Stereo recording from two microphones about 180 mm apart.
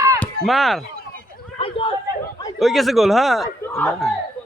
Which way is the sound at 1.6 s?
30° left (ahead or behind).